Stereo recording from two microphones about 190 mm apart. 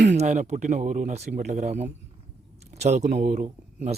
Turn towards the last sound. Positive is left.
turn(degrees=-35)  # may be behind; listen again after turning